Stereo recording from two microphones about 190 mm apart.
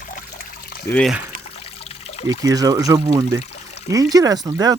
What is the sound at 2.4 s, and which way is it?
Speech, 20° right (ahead or behind).